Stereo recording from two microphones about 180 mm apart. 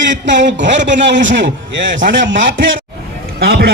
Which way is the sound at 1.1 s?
45° right (ahead or behind).